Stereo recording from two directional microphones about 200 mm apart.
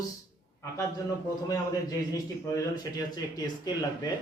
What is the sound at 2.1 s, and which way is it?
A man's voice, 15° left (ahead or behind).